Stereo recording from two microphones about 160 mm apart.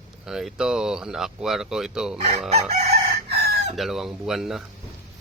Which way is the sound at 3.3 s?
80° right.